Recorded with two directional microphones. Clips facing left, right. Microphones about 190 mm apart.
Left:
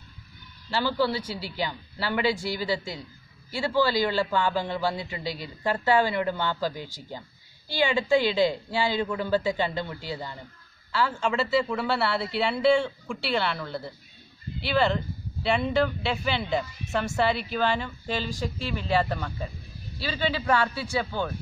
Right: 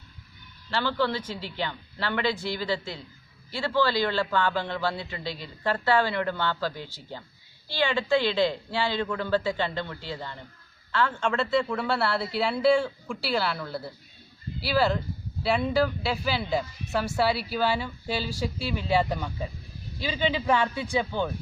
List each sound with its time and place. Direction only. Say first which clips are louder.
0.7 s a man's voice: left 1 dB; 10° left (ahead or behind); by 21.3 s 20° right (ahead or behind)